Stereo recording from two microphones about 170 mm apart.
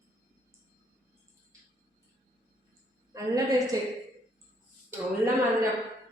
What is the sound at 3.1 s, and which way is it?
Speech, 20° right (ahead or behind).